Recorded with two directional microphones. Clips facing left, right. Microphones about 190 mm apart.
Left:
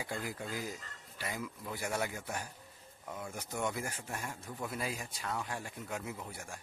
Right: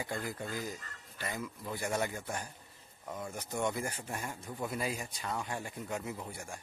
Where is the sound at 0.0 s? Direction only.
10° left (ahead or behind).